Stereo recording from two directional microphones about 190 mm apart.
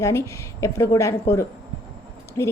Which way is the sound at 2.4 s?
20° left (ahead or behind).